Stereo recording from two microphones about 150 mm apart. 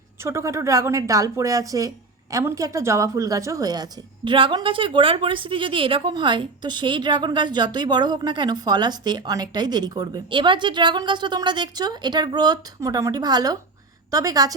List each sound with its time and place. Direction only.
0.2 s a woman's voice: 20° right (ahead or behind)